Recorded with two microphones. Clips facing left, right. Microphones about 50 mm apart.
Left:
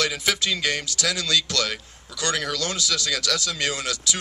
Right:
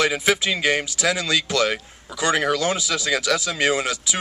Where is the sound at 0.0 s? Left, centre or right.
Centre.